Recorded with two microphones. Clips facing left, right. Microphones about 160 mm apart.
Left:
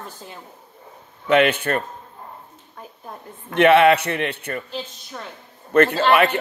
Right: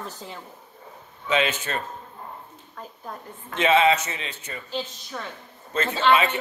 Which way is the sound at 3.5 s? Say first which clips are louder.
Left 6 dB; 65° left (ahead or behind).